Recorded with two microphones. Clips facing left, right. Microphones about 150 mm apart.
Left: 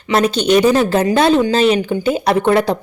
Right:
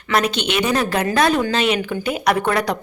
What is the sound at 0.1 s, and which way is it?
Speech, 30° left (ahead or behind).